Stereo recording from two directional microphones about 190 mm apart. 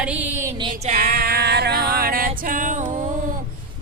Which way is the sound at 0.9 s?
50° right (ahead or behind).